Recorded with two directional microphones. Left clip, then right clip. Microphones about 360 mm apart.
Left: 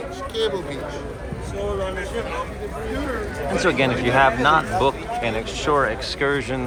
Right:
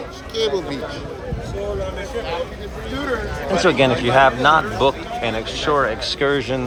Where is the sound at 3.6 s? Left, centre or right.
Centre.